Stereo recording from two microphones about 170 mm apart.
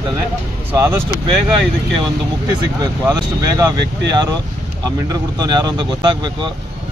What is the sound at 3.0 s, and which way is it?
Speech, 20° right (ahead or behind).